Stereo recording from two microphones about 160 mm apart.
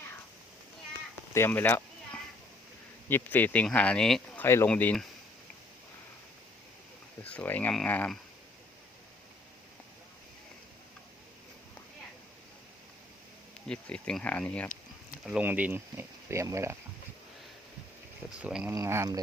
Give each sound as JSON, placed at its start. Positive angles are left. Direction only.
{"t": 1.3, "sound": "a sound", "side_deg": 15}
{"t": 3.1, "sound": "speech", "side_deg": 10}
{"t": 4.4, "sound": "speech", "side_deg": 15}
{"t": 7.2, "sound": "speech", "side_deg": 10}
{"t": 13.7, "sound": "speech", "side_deg": 5}
{"t": 15.2, "sound": "speech", "side_deg": -10}
{"t": 18.3, "sound": "speech", "side_deg": -5}
{"t": 18.7, "sound": "speech", "side_deg": -15}